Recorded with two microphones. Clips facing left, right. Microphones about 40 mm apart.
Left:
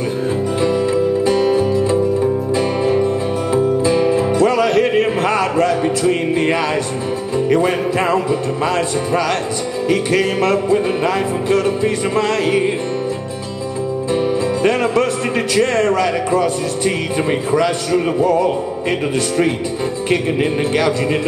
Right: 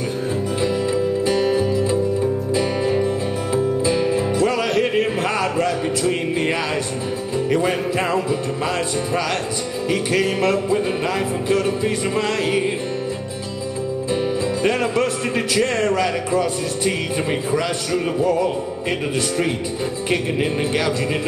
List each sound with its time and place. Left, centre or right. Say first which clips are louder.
0.6 s music: left 4 dB; centre
7.3 s speech: left 4 dB; centre
14.1 s speech: left 4 dB; centre